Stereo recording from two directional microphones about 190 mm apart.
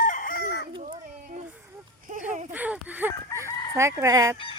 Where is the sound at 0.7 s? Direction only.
35° right (ahead or behind).